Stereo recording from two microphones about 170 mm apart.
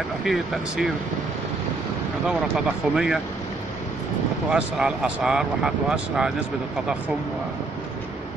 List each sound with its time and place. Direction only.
0.2 s speech: centre (ahead or behind)
2.2 s speech: 5° right (ahead or behind)
4.5 s speech: 5° right (ahead or behind)